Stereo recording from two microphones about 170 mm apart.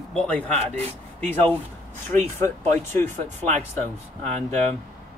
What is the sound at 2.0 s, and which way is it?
Speech, 15° left (ahead or behind).